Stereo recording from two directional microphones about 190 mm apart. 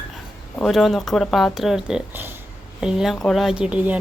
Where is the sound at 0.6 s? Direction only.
Centre (ahead or behind).